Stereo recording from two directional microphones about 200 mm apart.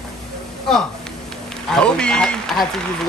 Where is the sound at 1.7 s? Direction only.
5° left (ahead or behind).